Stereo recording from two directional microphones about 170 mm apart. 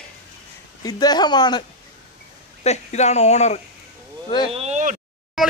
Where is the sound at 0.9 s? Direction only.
25° left (ahead or behind).